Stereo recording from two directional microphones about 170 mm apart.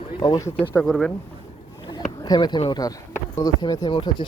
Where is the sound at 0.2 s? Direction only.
20° left (ahead or behind).